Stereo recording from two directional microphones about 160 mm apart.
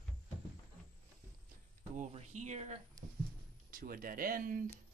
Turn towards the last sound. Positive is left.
turn(degrees=-60)  # may be behind; listen again after turning